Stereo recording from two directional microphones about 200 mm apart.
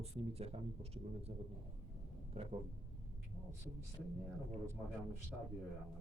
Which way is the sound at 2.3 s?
30° right (ahead or behind).